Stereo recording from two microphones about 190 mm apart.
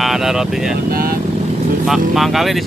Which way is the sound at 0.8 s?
50° right (ahead or behind).